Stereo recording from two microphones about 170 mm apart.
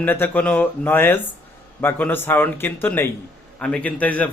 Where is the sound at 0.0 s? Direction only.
10° left (ahead or behind).